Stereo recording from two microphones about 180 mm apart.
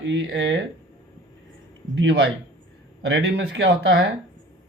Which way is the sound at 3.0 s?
70° right (ahead or behind).